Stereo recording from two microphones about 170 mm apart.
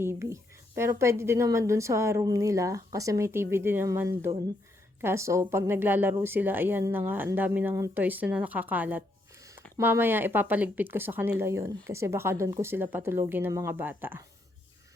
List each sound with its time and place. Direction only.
0.0 s speech: 15° right (ahead or behind)